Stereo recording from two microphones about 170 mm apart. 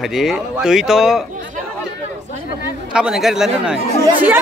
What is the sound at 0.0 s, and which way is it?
Speech, centre (ahead or behind).